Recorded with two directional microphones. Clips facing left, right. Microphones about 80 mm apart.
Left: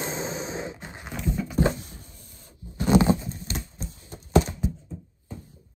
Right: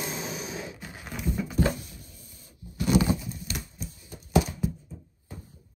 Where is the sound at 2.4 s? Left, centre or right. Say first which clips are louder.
Left 1 dB; left.